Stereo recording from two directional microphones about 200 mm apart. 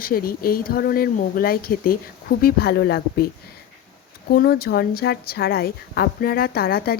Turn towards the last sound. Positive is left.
turn(degrees=50)  # may be behind; listen again after turning